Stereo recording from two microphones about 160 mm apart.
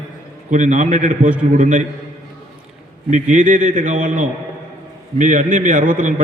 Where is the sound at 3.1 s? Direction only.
50° right (ahead or behind).